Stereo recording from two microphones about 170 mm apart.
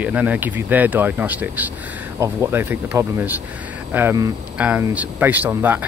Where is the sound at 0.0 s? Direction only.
10° right (ahead or behind).